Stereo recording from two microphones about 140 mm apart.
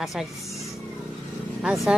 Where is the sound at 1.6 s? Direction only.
Centre (ahead or behind).